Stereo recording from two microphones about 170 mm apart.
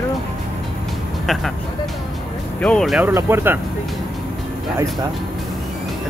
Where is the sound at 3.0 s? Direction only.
15° right (ahead or behind).